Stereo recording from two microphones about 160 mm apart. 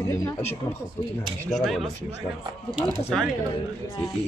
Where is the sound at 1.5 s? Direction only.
Centre (ahead or behind).